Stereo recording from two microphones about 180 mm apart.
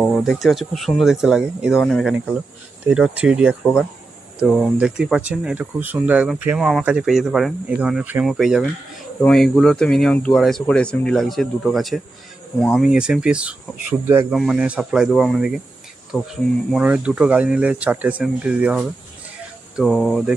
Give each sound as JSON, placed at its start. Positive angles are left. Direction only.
{"t": 0.0, "sound": "speech", "side_deg": 5}